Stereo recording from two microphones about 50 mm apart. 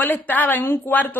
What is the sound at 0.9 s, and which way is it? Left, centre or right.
Speech, left.